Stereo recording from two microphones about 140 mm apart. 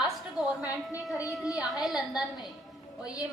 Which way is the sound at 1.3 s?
Centre (ahead or behind).